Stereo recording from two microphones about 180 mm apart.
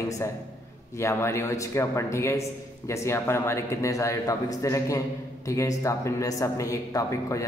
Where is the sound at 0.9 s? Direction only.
15° left (ahead or behind).